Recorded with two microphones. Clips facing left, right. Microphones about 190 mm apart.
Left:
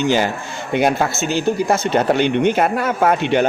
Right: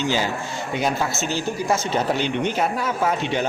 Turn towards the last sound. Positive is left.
turn(degrees=60)  # may be behind; listen again after turning